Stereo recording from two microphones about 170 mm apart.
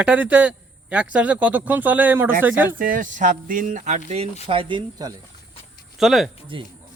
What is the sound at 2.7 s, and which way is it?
Speech, 55° right (ahead or behind).